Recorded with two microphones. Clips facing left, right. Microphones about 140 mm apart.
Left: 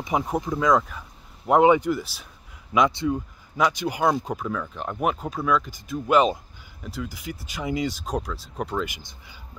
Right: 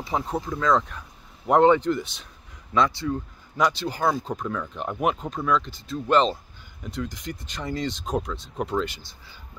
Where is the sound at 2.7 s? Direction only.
15° left (ahead or behind).